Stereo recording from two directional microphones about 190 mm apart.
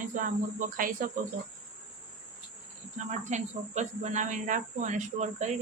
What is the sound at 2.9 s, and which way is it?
Speech, 40° right (ahead or behind).